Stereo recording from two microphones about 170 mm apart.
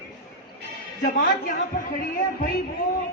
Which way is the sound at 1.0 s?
60° left (ahead or behind).